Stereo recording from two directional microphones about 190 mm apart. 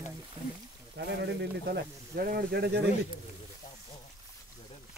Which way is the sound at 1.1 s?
65° right (ahead or behind).